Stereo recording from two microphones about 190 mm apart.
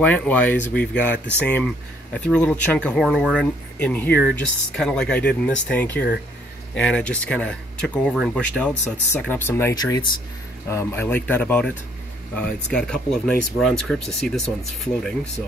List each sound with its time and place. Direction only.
0.0 s speech: 5° left (ahead or behind)